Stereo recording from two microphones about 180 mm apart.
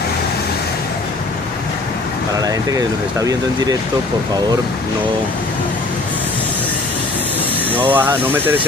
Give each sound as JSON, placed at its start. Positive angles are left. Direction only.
{"t": 2.4, "sound": "speech", "side_deg": -20}
{"t": 7.8, "sound": "speech", "side_deg": -10}